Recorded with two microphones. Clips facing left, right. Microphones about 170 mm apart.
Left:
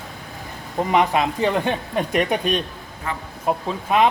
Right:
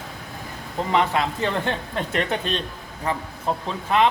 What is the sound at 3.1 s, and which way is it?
Speech, 35° right (ahead or behind).